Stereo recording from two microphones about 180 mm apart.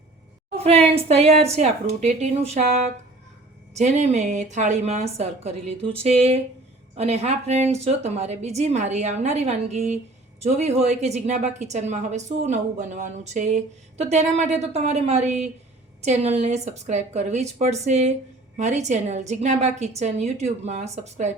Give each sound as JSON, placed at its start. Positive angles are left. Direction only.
{"t": 0.5, "sound": "a woman's voice", "side_deg": -35}